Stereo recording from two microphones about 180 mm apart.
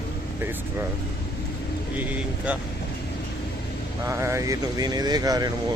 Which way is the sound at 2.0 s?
10° right (ahead or behind).